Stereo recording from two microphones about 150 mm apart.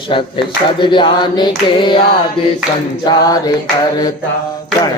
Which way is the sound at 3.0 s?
25° left (ahead or behind).